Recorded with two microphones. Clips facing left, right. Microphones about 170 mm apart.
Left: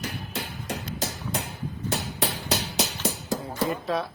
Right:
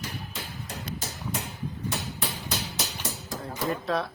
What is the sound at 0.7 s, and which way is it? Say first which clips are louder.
Music: left 6 dB; 80° left.